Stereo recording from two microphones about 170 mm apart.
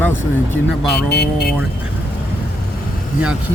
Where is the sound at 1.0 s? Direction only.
80° left.